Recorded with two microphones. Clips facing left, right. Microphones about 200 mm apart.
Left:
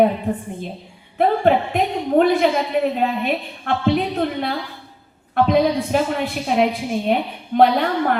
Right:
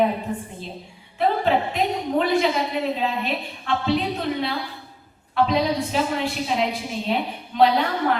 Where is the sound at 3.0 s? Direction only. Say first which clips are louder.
Left 4 dB; 55° left (ahead or behind).